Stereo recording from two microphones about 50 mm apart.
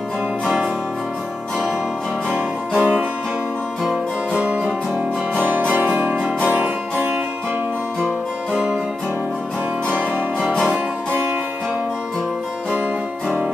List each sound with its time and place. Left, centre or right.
2.8 s music: right
3.8 s music: centre
4.4 s music: right
9.8 s music: right